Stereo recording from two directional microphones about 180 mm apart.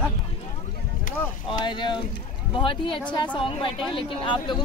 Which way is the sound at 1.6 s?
25° left (ahead or behind).